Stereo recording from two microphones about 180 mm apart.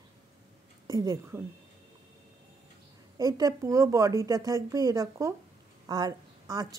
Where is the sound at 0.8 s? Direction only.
20° right (ahead or behind).